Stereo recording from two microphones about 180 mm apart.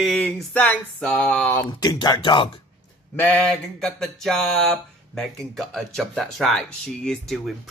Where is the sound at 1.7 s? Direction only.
25° left (ahead or behind).